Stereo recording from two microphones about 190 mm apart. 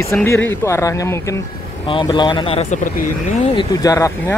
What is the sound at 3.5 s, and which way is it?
Speech, 15° left (ahead or behind).